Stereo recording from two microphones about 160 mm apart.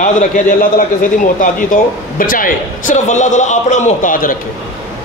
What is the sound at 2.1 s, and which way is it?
A man's voice, 60° left (ahead or behind).